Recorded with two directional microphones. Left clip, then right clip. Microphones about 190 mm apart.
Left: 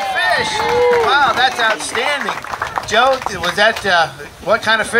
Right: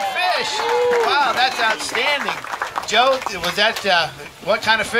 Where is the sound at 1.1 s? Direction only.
35° right (ahead or behind).